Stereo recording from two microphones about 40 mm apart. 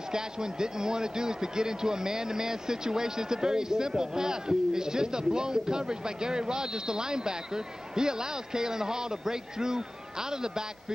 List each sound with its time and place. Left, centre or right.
0.1 s speech: centre